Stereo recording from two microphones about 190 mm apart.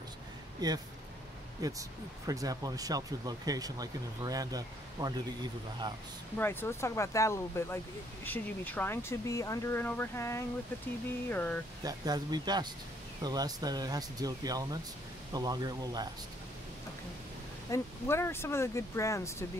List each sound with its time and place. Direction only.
0.6 s speech: 20° right (ahead or behind)
6.3 s speech: 10° left (ahead or behind)
11.8 s speech: 20° right (ahead or behind)
17.6 s speech: 15° left (ahead or behind)